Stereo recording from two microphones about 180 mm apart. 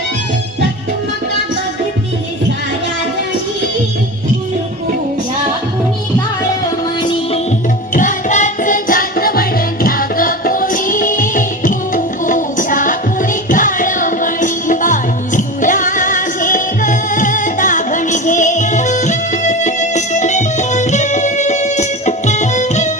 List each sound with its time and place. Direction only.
7.9 s music: 45° left (ahead or behind)